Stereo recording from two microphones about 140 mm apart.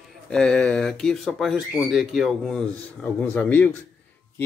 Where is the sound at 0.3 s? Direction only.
5° left (ahead or behind).